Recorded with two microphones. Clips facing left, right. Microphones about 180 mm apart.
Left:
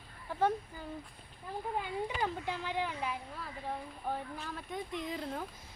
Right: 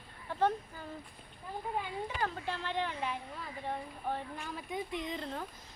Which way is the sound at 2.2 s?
15° left (ahead or behind).